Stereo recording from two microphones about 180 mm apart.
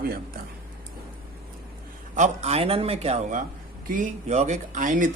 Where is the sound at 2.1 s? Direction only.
40° right (ahead or behind).